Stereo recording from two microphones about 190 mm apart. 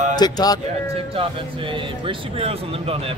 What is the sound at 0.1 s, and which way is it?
Speech, 20° left (ahead or behind).